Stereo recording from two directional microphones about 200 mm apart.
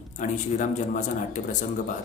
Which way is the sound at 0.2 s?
40° left (ahead or behind).